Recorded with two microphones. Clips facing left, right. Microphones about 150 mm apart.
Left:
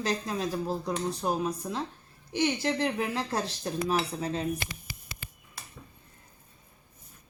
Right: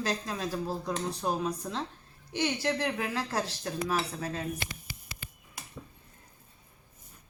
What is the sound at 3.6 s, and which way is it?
Cutlery, 20° left (ahead or behind).